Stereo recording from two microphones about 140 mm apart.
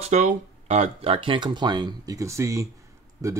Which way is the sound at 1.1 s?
35° right (ahead or behind).